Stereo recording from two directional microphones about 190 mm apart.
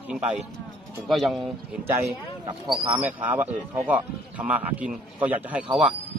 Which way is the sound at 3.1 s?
10° right (ahead or behind).